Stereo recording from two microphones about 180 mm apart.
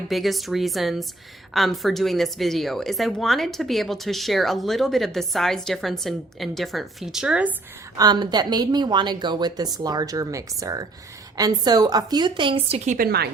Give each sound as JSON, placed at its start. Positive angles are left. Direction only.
{"t": 0.1, "sound": "a woman's voice", "side_deg": 0}
{"t": 7.9, "sound": "a woman's voice", "side_deg": -25}